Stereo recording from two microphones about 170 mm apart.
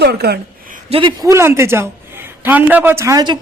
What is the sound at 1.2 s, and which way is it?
A woman's voice, 15° right (ahead or behind).